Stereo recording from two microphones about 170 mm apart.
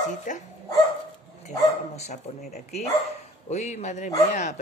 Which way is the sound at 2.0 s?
40° left (ahead or behind).